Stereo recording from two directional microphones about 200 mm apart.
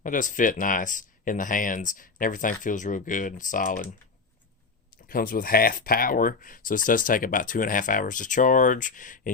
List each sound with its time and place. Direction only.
0.0 s speech: 40° left (ahead or behind)
5.0 s speech: 45° left (ahead or behind)